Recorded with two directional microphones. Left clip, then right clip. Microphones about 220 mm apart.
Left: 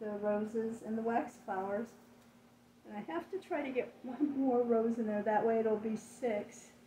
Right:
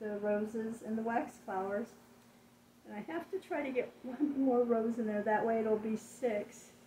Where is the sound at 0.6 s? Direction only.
15° left (ahead or behind).